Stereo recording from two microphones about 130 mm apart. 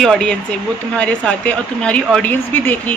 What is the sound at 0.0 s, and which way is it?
Speech, 5° left (ahead or behind).